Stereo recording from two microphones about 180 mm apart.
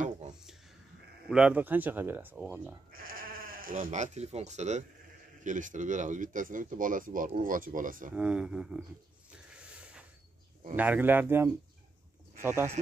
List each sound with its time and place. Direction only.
1.3 s speech: 5° right (ahead or behind)
2.9 s speech: 55° right (ahead or behind)
8.1 s speech: 5° right (ahead or behind)
9.6 s a sound: 5° right (ahead or behind)
10.8 s speech: 10° right (ahead or behind)